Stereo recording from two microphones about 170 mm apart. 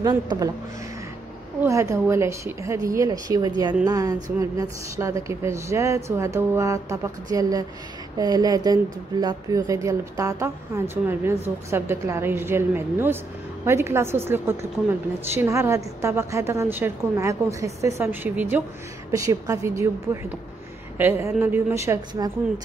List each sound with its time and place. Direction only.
0.0 s a woman's voice: 20° right (ahead or behind)
1.6 s a woman's voice: 15° right (ahead or behind)